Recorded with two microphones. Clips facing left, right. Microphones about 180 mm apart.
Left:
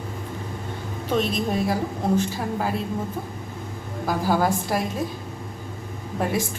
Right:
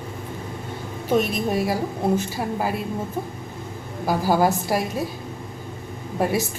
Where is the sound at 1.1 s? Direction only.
10° right (ahead or behind).